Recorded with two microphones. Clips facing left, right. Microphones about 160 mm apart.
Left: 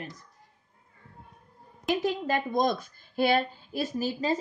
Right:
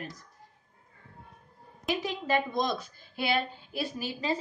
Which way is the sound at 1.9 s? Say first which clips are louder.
Left 2 dB; 45° left (ahead or behind).